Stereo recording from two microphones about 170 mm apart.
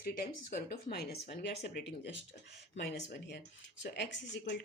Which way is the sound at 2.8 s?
75° left (ahead or behind).